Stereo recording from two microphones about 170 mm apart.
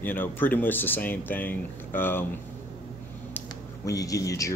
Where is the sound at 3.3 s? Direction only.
20° left (ahead or behind).